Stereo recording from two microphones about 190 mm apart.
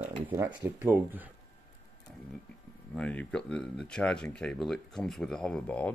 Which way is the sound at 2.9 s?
5° left (ahead or behind).